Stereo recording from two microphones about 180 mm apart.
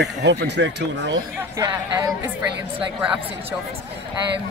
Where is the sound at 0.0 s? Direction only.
70° right (ahead or behind).